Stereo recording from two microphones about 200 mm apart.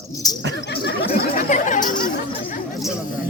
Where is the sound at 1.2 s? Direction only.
45° left (ahead or behind).